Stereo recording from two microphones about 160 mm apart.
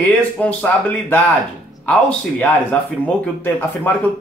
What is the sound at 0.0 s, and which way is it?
Speech, 10° left (ahead or behind).